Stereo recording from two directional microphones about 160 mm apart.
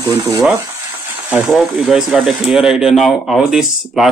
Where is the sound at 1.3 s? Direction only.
Centre (ahead or behind).